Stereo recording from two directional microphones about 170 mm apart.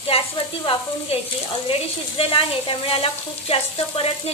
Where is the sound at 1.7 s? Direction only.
35° left (ahead or behind).